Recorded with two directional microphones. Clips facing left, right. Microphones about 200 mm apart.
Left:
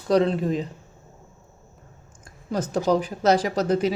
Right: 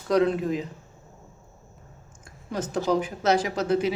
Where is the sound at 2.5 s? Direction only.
40° left (ahead or behind).